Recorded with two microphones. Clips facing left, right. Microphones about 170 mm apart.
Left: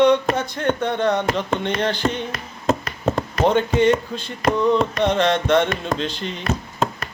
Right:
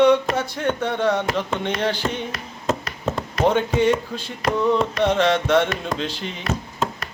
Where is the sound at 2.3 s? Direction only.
55° left (ahead or behind).